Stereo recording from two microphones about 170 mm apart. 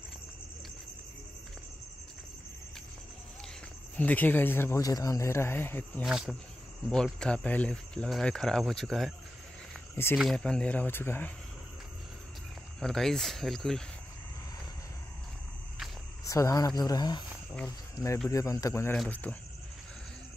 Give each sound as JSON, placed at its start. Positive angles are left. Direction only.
{"t": 3.9, "sound": "speech", "side_deg": 10}
{"t": 6.0, "sound": "speech", "side_deg": 0}
{"t": 10.1, "sound": "speech", "side_deg": 0}
{"t": 12.8, "sound": "speech", "side_deg": 5}
{"t": 16.3, "sound": "speech", "side_deg": 20}